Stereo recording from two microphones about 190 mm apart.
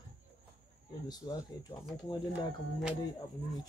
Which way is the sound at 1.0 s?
20° left (ahead or behind).